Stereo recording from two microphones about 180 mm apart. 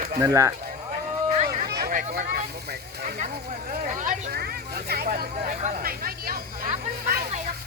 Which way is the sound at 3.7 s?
50° right (ahead or behind).